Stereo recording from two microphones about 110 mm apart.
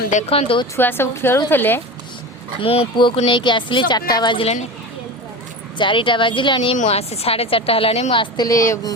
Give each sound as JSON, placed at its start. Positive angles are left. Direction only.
{"t": 0.2, "sound": "a woman's voice", "side_deg": 60}
{"t": 0.8, "sound": "speech", "side_deg": 20}
{"t": 2.6, "sound": "speech", "side_deg": 55}
{"t": 5.7, "sound": "speech", "side_deg": 50}
{"t": 6.8, "sound": "a woman's voice", "side_deg": 70}
{"t": 8.4, "sound": "speech", "side_deg": 30}